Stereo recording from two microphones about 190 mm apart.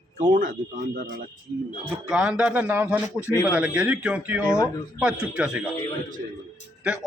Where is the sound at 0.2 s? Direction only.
45° right (ahead or behind).